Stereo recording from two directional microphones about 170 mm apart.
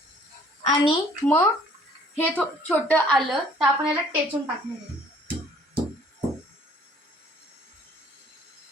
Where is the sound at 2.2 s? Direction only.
10° left (ahead or behind).